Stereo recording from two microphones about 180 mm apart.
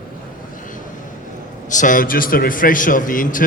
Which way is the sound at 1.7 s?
45° left (ahead or behind).